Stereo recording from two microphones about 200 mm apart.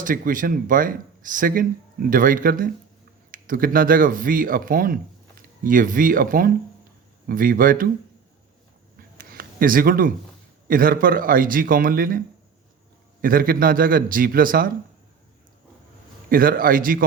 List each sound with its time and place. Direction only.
0.0 s speech: 40° right (ahead or behind)
9.1 s a sound: 45° right (ahead or behind)
10.7 s speech: 45° right (ahead or behind)
13.2 s speech: 45° right (ahead or behind)
16.3 s speech: 45° right (ahead or behind)